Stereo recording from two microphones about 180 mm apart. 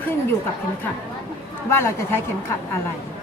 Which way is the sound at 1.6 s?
15° left (ahead or behind).